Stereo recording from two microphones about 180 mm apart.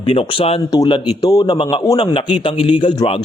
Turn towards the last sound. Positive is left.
turn(degrees=25)  # may be behind; listen again after turning